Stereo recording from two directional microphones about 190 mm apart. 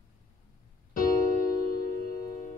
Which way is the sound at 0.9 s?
45° left (ahead or behind).